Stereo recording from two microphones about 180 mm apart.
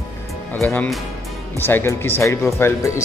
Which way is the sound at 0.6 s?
10° left (ahead or behind).